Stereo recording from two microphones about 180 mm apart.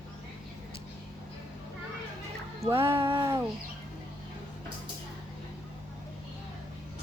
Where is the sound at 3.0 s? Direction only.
25° right (ahead or behind).